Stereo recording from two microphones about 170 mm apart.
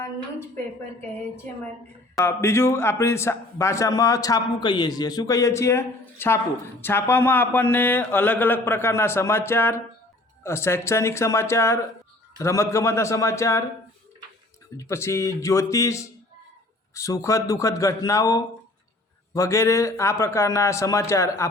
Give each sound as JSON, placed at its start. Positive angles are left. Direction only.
{"t": 2.1, "sound": "a man's voice", "side_deg": 15}
{"t": 14.8, "sound": "a man's voice", "side_deg": 15}